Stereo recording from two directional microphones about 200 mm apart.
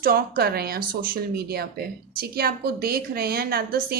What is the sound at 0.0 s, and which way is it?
Speech, 50° right (ahead or behind).